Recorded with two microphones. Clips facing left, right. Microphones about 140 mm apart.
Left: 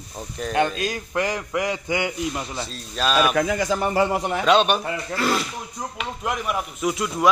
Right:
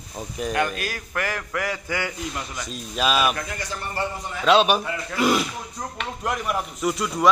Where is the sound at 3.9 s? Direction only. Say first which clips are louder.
Left 8 dB; 75° left (ahead or behind).